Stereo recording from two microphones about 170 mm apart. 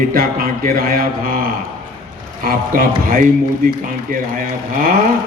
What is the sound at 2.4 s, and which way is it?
A man's voice, 55° right (ahead or behind).